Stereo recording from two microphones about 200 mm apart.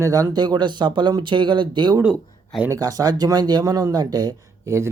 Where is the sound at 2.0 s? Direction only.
5° right (ahead or behind).